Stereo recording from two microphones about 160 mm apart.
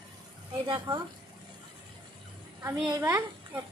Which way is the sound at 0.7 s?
25° right (ahead or behind).